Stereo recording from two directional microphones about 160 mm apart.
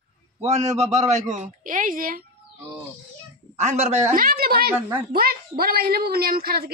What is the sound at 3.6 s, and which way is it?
Speech, 45° right (ahead or behind).